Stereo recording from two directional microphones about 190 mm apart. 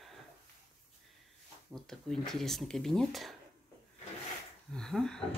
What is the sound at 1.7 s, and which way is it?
Speech, centre (ahead or behind).